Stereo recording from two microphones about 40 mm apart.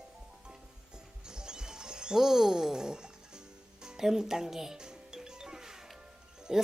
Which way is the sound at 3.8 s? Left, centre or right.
Centre.